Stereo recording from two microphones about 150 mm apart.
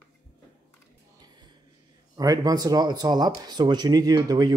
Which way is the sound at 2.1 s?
25° right (ahead or behind).